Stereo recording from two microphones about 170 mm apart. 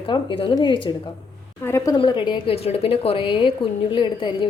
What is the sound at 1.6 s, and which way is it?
Speech, 15° left (ahead or behind).